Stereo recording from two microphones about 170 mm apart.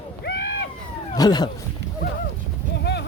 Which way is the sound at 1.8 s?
90° right.